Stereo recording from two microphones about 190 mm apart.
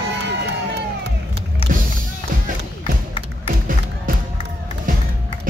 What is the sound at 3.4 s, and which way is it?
Music, 45° right (ahead or behind).